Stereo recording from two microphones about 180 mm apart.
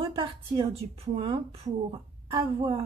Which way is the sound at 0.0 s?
30° right (ahead or behind).